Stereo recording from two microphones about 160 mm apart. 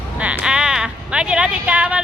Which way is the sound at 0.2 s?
5° right (ahead or behind).